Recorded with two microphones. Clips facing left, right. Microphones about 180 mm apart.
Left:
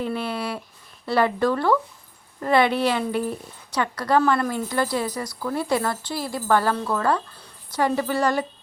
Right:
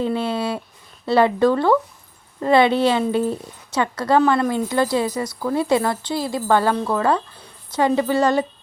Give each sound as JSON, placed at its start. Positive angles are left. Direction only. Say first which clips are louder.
{"t": 0.0, "sound": "a woman's voice", "louder": "right 5 dB", "side_deg": -25}